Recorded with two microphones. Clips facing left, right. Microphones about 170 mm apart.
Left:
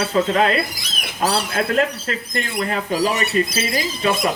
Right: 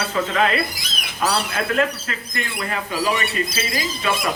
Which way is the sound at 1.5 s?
40° left (ahead or behind).